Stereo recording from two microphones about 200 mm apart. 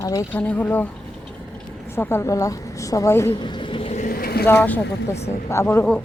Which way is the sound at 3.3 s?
25° left (ahead or behind).